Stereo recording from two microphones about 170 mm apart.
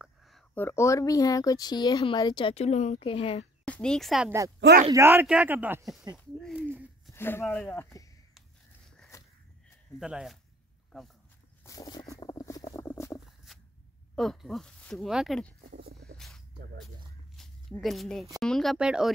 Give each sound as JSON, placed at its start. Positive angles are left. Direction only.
{"t": 0.0, "sound": "a sound", "side_deg": 0}
{"t": 0.6, "sound": "speech", "side_deg": 15}
{"t": 3.6, "sound": "speech", "side_deg": 5}
{"t": 4.6, "sound": "speech", "side_deg": -90}
{"t": 4.9, "sound": "speech", "side_deg": -15}
{"t": 7.1, "sound": "speech", "side_deg": 15}
{"t": 9.9, "sound": "speech", "side_deg": -5}
{"t": 11.6, "sound": "a sound", "side_deg": 20}
{"t": 14.1, "sound": "speech", "side_deg": 0}
{"t": 15.7, "sound": "music", "side_deg": -70}
{"t": 17.4, "sound": "a sound", "side_deg": 0}
{"t": 18.4, "sound": "speech", "side_deg": 0}